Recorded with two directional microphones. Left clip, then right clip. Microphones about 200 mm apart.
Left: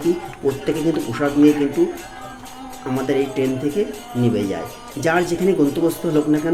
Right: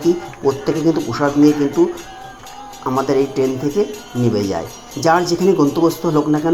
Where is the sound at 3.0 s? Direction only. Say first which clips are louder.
Right 2 dB; 5° right (ahead or behind).